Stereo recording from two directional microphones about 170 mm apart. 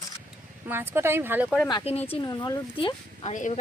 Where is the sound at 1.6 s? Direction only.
30° left (ahead or behind).